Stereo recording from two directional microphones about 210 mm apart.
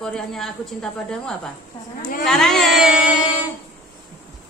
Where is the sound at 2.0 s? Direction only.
40° left (ahead or behind).